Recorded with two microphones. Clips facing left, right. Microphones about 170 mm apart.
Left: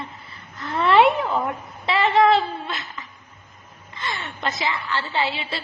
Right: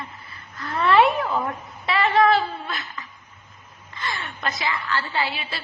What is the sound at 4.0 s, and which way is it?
A woman's voice, 25° left (ahead or behind).